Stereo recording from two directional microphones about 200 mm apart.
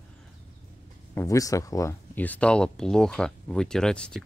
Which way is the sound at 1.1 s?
15° left (ahead or behind).